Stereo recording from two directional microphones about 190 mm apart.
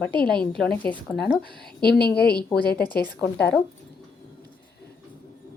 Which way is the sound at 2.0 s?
55° left (ahead or behind).